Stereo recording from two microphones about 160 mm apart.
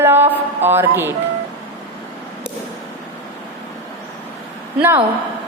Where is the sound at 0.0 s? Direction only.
15° right (ahead or behind).